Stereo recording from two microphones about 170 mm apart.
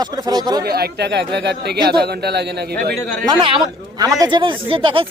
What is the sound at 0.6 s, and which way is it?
Speech, 65° right (ahead or behind).